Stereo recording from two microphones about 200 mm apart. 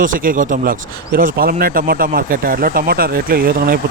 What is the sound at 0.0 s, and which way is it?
A man's voice, 45° right (ahead or behind).